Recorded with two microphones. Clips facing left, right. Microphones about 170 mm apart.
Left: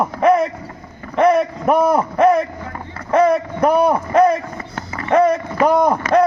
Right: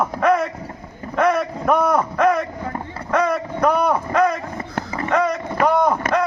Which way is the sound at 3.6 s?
35° left (ahead or behind).